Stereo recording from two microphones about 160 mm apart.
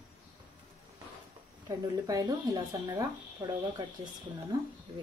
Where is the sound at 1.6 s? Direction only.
25° right (ahead or behind).